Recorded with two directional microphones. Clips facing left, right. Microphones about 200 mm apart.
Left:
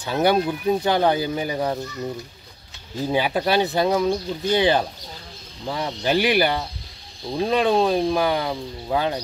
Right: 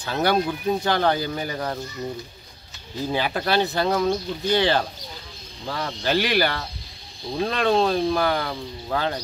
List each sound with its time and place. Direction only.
0.0 s speech: 15° left (ahead or behind)
3.1 s speech: 15° left (ahead or behind)